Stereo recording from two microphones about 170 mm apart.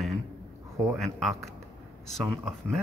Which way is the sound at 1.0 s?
Centre (ahead or behind).